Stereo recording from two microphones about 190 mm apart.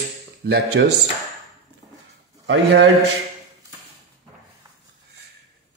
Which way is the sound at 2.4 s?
65° right (ahead or behind).